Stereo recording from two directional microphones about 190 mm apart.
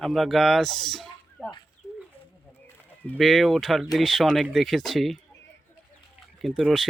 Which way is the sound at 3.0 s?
5° left (ahead or behind).